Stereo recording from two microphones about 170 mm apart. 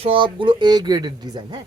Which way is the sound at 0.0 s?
30° right (ahead or behind).